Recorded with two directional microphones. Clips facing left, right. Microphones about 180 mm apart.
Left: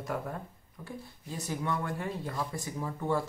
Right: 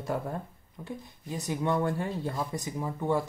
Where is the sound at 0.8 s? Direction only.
15° right (ahead or behind).